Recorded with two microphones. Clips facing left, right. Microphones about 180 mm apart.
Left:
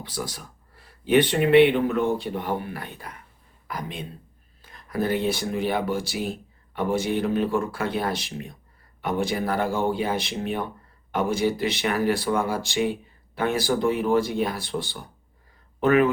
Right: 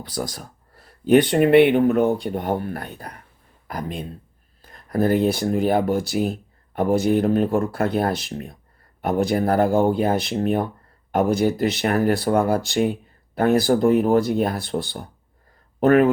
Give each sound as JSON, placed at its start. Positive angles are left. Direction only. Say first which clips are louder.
{"t": 0.1, "sound": "speech", "louder": "right 5 dB", "side_deg": -45}
{"t": 4.6, "sound": "a sound", "louder": "right 6 dB", "side_deg": -45}
{"t": 5.4, "sound": "speech", "louder": "right 6 dB", "side_deg": -45}